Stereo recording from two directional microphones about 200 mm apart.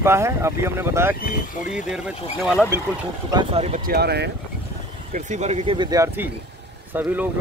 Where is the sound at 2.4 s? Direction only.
5° left (ahead or behind).